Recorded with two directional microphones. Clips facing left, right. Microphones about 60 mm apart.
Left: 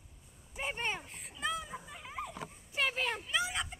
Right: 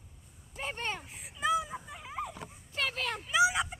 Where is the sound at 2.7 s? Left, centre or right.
Centre.